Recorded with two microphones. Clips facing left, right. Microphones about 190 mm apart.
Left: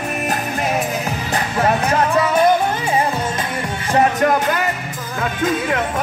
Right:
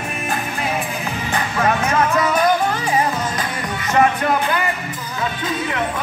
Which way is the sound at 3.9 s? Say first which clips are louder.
Left 1 dB; 40° left (ahead or behind).